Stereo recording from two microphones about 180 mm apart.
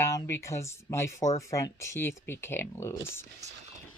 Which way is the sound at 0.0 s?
15° left (ahead or behind).